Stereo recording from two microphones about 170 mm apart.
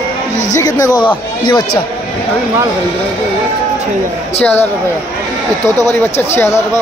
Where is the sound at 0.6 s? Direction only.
20° left (ahead or behind).